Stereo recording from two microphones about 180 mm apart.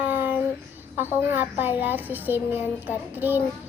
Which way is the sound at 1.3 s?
10° right (ahead or behind).